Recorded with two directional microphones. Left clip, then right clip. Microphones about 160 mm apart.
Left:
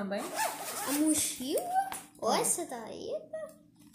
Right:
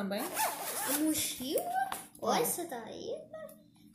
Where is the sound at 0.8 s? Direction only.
50° left (ahead or behind).